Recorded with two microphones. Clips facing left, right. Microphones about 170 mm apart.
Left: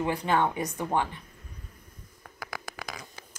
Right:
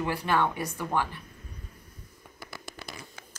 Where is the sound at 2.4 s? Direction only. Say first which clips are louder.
Left 4 dB; 90° left.